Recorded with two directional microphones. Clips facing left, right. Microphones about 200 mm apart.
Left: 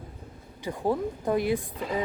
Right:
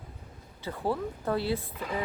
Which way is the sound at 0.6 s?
15° left (ahead or behind).